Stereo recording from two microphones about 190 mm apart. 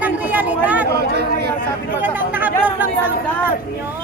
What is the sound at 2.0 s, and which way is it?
Speech, 10° right (ahead or behind).